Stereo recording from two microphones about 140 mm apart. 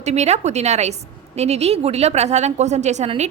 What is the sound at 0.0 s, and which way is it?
A woman's voice, 50° right (ahead or behind).